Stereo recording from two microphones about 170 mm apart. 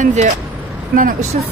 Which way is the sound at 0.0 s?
45° right (ahead or behind).